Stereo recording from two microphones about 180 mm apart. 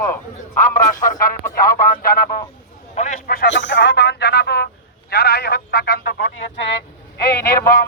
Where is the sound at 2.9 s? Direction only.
45° left (ahead or behind).